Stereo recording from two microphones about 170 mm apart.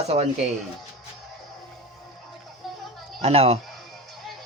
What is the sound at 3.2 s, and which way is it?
Speech, 35° right (ahead or behind).